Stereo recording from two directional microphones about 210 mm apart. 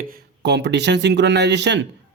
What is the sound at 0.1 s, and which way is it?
Speech, 55° right (ahead or behind).